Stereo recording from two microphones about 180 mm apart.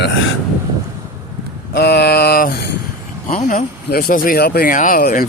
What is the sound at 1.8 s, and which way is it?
Speech, 65° left (ahead or behind).